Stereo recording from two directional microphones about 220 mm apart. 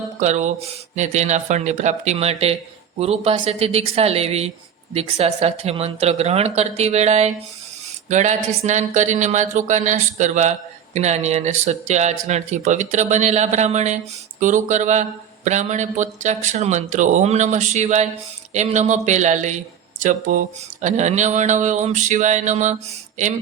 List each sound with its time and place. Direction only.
0.2 s speech: 30° right (ahead or behind)